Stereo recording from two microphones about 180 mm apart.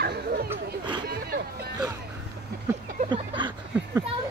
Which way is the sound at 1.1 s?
60° right (ahead or behind).